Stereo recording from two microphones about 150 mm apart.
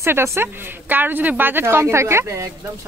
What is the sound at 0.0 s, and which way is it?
Speech, 15° right (ahead or behind).